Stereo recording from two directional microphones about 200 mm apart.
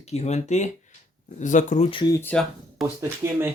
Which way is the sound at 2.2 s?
5° left (ahead or behind).